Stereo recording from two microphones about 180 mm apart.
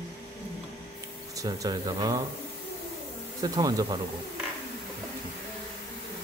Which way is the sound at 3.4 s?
20° right (ahead or behind).